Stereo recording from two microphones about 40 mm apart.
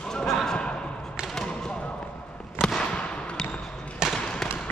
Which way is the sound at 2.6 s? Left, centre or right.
Centre.